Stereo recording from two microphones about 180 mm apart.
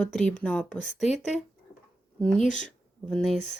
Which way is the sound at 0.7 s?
40° left (ahead or behind).